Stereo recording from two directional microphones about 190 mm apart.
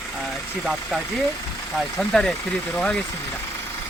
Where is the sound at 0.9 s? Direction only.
Centre (ahead or behind).